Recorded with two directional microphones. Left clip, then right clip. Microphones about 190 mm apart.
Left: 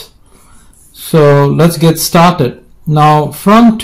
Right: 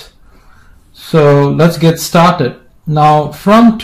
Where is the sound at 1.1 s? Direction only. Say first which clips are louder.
Left 1 dB; 30° left (ahead or behind).